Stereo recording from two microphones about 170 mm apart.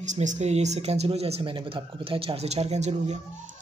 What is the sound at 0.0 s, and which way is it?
Speech, 45° right (ahead or behind).